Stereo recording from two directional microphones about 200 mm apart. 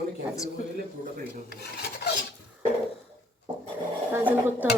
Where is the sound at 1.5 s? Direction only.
55° left (ahead or behind).